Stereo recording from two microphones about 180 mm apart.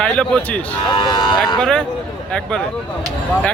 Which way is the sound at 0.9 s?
25° left (ahead or behind).